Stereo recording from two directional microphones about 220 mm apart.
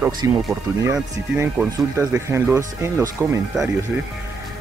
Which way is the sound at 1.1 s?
10° right (ahead or behind).